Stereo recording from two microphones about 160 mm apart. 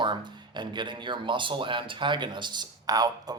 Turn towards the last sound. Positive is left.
turn(degrees=-25)  # may be behind; listen again after turning